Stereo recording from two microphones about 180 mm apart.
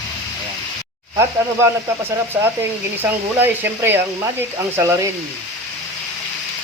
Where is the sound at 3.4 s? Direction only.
10° right (ahead or behind).